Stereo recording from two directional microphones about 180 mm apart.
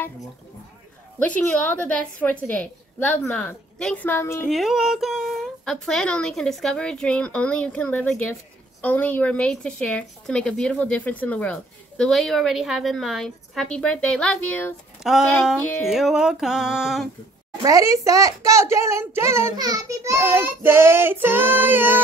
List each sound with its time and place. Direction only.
1.2 s a woman's voice: 10° left (ahead or behind)
4.5 s a woman's voice: centre (ahead or behind)
17.6 s a child's voice: 20° right (ahead or behind)